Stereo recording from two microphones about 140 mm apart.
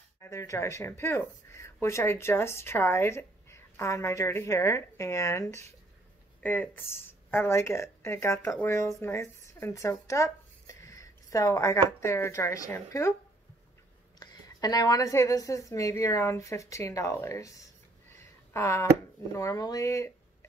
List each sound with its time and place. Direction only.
0.2 s speech: 20° left (ahead or behind)
14.2 s speech: 30° left (ahead or behind)
18.5 s a sound: 20° left (ahead or behind)
19.3 s speech: 25° left (ahead or behind)